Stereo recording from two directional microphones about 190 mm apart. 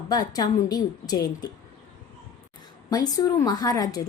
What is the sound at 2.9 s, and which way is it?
A woman's voice, 20° left (ahead or behind).